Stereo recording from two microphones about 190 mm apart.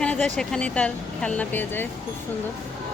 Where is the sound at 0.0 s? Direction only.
5° left (ahead or behind).